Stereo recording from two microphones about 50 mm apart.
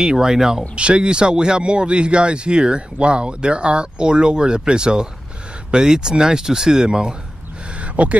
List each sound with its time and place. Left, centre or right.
0.0 s speech: centre
0.7 s speech: right
7.8 s a sound: right